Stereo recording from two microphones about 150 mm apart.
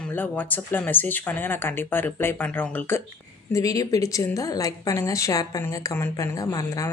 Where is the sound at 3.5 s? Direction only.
25° left (ahead or behind).